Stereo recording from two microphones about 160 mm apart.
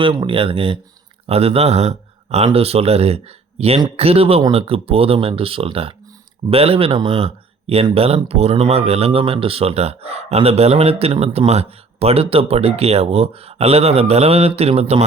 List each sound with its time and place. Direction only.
0.0 s speech: 30° right (ahead or behind)